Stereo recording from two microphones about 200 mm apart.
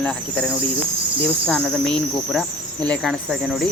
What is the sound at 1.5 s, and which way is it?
Speech, 5° left (ahead or behind).